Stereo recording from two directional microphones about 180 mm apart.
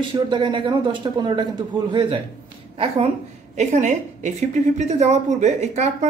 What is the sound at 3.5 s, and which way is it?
A woman's voice, 40° right (ahead or behind).